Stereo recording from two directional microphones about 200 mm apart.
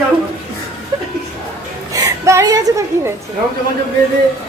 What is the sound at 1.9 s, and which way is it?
A woman's voice, 15° right (ahead or behind).